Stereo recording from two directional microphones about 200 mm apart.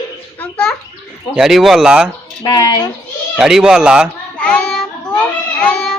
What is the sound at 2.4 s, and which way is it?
Speech, 20° left (ahead or behind).